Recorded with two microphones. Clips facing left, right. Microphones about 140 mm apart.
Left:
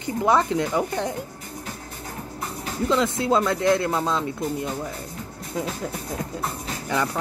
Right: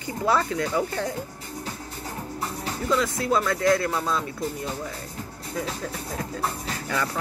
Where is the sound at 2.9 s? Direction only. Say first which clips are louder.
Left 2 dB; 25° left (ahead or behind).